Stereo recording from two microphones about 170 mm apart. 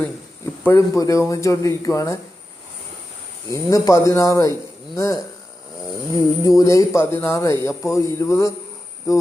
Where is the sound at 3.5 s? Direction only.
20° left (ahead or behind).